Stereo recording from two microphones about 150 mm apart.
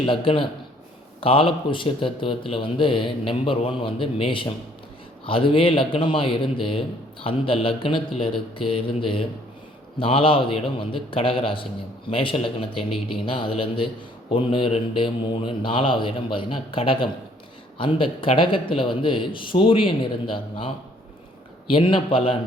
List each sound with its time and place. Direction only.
0.0 s speech: 35° left (ahead or behind)